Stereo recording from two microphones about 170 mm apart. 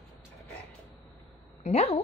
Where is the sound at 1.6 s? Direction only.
35° left (ahead or behind).